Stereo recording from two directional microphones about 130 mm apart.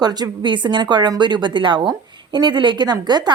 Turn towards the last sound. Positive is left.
turn(degrees=-35)  # may be behind; listen again after turning